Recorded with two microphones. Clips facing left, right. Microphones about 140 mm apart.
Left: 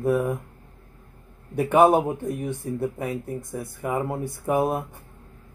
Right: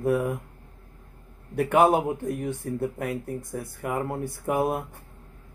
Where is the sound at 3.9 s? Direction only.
5° left (ahead or behind).